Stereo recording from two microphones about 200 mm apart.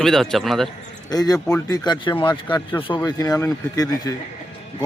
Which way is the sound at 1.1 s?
20° left (ahead or behind).